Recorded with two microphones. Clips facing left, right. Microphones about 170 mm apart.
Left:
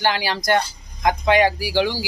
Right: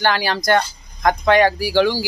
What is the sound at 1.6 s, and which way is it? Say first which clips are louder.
Speech: right 4 dB; 15° left (ahead or behind).